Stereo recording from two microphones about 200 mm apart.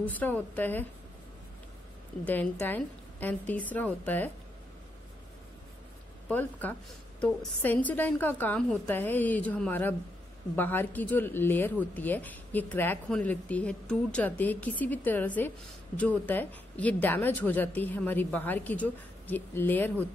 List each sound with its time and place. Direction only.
0.0 s speech: 10° left (ahead or behind)
2.2 s speech: 10° left (ahead or behind)
6.2 s speech: 10° left (ahead or behind)